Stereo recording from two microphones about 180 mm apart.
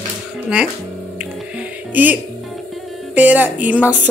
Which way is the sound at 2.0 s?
10° right (ahead or behind).